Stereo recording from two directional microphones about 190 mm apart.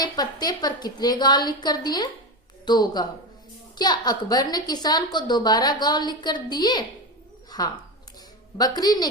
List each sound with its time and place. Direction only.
0.0 s a woman's voice: 20° left (ahead or behind)